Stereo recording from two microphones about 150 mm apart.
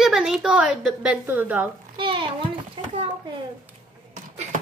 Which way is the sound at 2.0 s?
35° right (ahead or behind).